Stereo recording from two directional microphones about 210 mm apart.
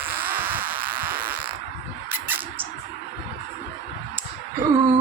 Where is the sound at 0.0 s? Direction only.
10° right (ahead or behind).